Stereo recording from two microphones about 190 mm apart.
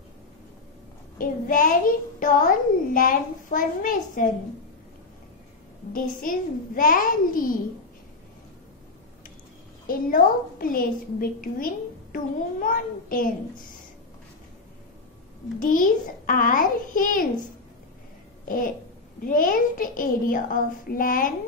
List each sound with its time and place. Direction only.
1.1 s a woman's voice: 45° left (ahead or behind)
5.9 s a woman's voice: 45° left (ahead or behind)
9.8 s a woman's voice: 50° left (ahead or behind)
15.6 s a woman's voice: 45° left (ahead or behind)
19.2 s a woman's voice: 45° left (ahead or behind)